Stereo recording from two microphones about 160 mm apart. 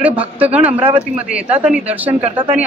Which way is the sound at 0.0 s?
10° right (ahead or behind).